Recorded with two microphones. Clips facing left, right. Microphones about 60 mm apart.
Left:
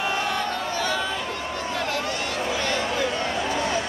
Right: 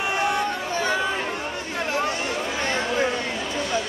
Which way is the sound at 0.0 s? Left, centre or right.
Right.